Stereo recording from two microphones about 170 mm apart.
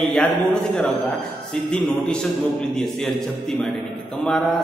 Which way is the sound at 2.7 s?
Centre (ahead or behind).